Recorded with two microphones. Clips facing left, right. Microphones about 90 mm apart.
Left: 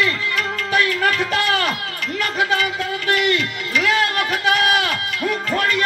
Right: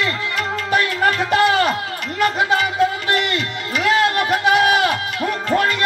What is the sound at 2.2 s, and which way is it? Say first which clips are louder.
Music: right 3 dB; 30° right (ahead or behind).